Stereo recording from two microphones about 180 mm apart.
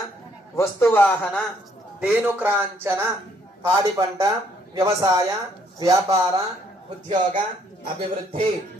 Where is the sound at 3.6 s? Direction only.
15° right (ahead or behind).